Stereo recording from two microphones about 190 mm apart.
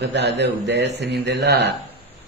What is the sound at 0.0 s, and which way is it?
Speech, 60° right (ahead or behind).